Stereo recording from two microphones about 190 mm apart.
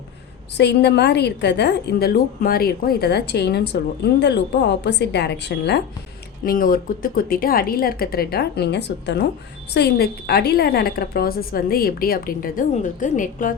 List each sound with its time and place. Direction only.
0.5 s a woman's voice: 65° left (ahead or behind)
6.4 s a woman's voice: 50° left (ahead or behind)